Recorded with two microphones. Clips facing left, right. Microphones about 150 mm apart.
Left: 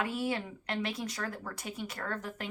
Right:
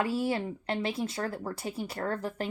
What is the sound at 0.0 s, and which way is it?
A woman's voice, 30° right (ahead or behind).